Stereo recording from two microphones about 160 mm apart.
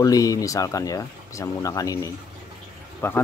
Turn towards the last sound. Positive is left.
turn(degrees=15)  # may be behind; listen again after turning